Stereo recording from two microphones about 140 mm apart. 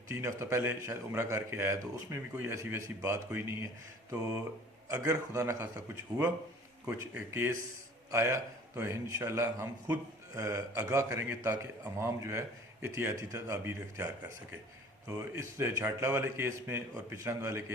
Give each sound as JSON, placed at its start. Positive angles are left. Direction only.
{"t": 0.1, "sound": "a man's voice", "side_deg": -20}
{"t": 6.8, "sound": "a man's voice", "side_deg": -10}
{"t": 15.1, "sound": "a man's voice", "side_deg": -20}